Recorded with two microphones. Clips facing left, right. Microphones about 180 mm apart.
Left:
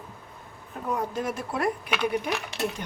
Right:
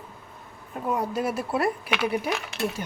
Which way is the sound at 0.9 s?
10° right (ahead or behind).